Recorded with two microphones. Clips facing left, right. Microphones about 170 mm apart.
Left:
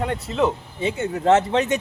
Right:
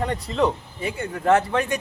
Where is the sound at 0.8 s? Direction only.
20° left (ahead or behind).